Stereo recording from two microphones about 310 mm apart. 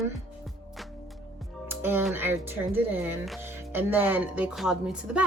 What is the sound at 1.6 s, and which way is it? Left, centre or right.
Speech, centre.